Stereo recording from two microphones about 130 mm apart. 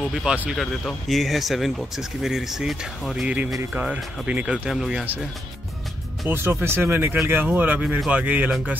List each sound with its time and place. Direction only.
0.1 s speech: 5° right (ahead or behind)
6.2 s speech: 15° right (ahead or behind)